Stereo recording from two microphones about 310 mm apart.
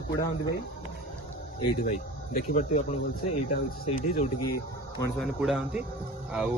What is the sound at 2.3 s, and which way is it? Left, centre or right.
Speech, left.